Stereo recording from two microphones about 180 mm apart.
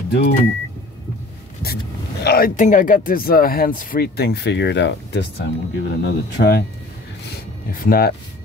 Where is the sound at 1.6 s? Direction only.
60° left (ahead or behind).